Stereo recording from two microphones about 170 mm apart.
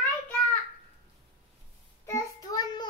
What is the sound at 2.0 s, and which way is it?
Child singing, 20° left (ahead or behind).